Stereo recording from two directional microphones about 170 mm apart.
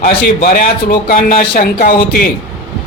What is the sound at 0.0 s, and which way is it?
A man's voice, 60° left (ahead or behind).